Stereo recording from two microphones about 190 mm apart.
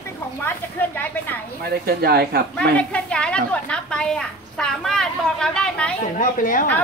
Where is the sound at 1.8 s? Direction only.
55° right (ahead or behind).